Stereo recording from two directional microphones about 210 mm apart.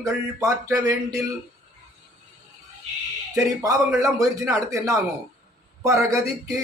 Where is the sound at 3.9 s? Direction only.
15° right (ahead or behind).